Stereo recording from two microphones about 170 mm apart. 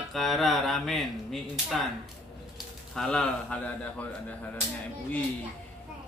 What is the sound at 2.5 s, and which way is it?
Speech, 5° left (ahead or behind).